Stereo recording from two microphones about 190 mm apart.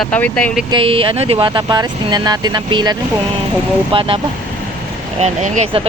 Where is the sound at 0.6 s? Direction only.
25° right (ahead or behind).